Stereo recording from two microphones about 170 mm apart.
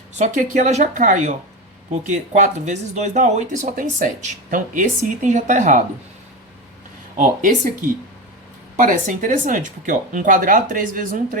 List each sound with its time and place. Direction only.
0.1 s speech: 45° right (ahead or behind)
7.2 s speech: 45° right (ahead or behind)
8.7 s speech: 50° right (ahead or behind)